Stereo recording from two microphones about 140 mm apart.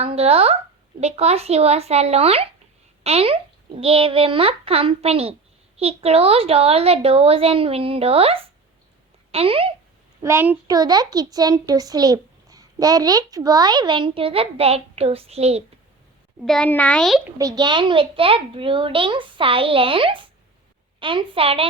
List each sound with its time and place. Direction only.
0.0 s a woman's voice: 45° right (ahead or behind)
10.2 s a child's voice: 15° right (ahead or behind)
10.7 s a child's voice: 30° right (ahead or behind); by 15.6 s 50° right (ahead or behind)
16.5 s a child's voice: 10° left (ahead or behind)
17.3 s a child's voice: 25° right (ahead or behind); by 21.7 s 40° right (ahead or behind)